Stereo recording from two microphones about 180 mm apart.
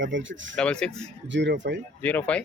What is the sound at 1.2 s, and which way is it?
Speech, 85° right.